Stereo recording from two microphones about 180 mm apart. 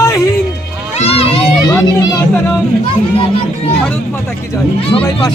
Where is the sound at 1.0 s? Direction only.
35° left (ahead or behind).